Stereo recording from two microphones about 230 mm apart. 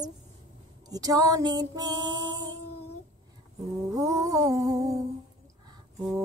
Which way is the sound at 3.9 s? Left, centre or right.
Centre.